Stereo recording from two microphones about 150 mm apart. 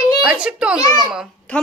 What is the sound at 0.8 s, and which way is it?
Speech, 25° left (ahead or behind).